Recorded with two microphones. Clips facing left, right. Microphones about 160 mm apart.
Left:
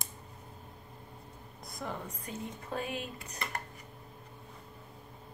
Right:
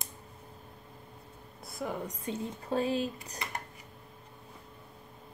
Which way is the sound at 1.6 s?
5° right (ahead or behind).